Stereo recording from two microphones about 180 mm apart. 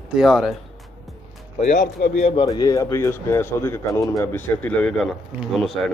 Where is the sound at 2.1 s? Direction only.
35° left (ahead or behind).